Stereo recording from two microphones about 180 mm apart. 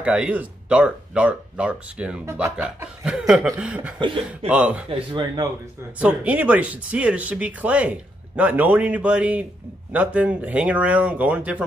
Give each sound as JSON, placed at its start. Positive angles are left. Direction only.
{"t": 0.0, "sound": "speech", "side_deg": -5}
{"t": 4.8, "sound": "speech", "side_deg": -25}
{"t": 5.9, "sound": "speech", "side_deg": -5}